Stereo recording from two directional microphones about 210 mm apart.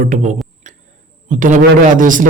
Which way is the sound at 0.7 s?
35° right (ahead or behind).